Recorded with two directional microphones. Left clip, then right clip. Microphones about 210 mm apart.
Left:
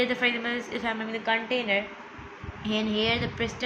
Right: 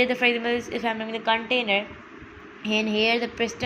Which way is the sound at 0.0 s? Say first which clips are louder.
Right 4 dB; 20° right (ahead or behind).